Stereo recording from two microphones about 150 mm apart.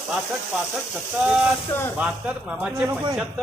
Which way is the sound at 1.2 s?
5° right (ahead or behind).